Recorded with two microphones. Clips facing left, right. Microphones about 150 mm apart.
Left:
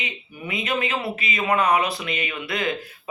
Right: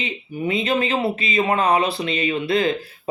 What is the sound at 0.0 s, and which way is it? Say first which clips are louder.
Speech: right 8 dB; 30° right (ahead or behind).